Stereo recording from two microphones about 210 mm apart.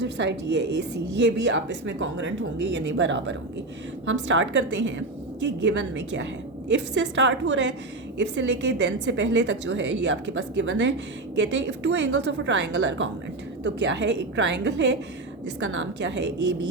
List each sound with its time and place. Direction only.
0.0 s a woman's voice: 55° right (ahead or behind)